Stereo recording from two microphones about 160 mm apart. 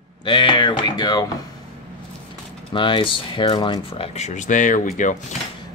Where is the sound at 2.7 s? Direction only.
30° left (ahead or behind); by 5.2 s 50° left (ahead or behind).